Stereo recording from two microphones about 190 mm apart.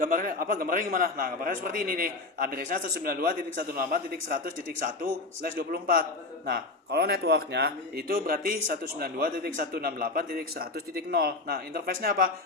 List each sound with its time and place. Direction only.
0.0 s a man's voice: 50° right (ahead or behind)